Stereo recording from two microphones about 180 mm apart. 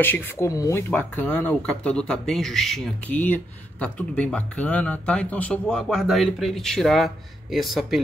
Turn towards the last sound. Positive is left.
turn(degrees=0)  # may be behind; listen again after turning